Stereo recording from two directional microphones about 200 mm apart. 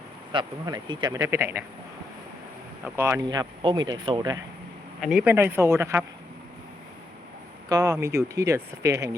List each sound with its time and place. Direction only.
0.3 s speech: 20° right (ahead or behind)
2.8 s speech: 10° right (ahead or behind)
4.9 s speech: 5° right (ahead or behind)
7.7 s speech: 15° right (ahead or behind)